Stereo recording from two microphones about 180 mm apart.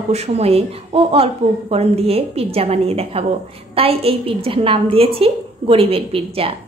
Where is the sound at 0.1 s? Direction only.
35° right (ahead or behind).